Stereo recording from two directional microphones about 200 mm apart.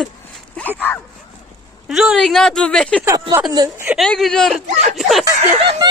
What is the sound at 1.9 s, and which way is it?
A woman's voice, centre (ahead or behind).